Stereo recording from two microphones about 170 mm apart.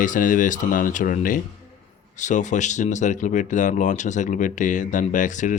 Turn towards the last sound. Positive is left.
turn(degrees=45)  # may be behind; listen again after turning